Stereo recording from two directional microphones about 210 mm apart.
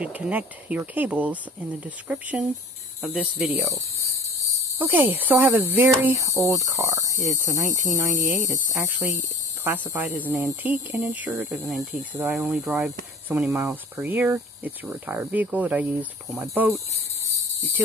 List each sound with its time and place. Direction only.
0.0 s speech: 5° right (ahead or behind)
4.7 s speech: 10° right (ahead or behind)
8.4 s speech: 40° right (ahead or behind)
8.8 s speech: 10° right (ahead or behind)